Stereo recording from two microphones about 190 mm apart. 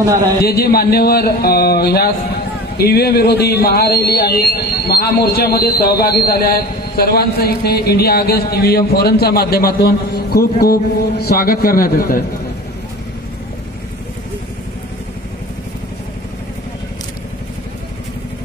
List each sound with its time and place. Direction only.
0.4 s speech: 55° left (ahead or behind)